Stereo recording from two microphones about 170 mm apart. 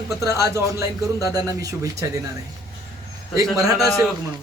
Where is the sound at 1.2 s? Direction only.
20° right (ahead or behind).